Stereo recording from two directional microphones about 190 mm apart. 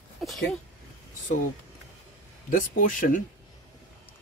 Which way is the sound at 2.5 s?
45° left (ahead or behind).